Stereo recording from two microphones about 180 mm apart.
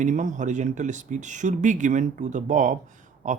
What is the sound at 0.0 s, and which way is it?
Speech, 45° right (ahead or behind).